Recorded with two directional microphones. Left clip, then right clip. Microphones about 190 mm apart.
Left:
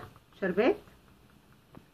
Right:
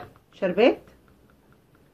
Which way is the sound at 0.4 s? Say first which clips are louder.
Right 7 dB; 15° right (ahead or behind).